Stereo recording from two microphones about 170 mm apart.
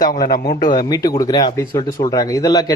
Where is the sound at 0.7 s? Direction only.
25° left (ahead or behind).